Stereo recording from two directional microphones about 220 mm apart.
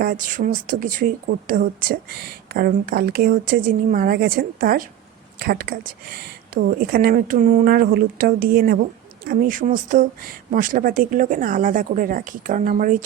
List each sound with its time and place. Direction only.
0.0 s speech: 40° right (ahead or behind)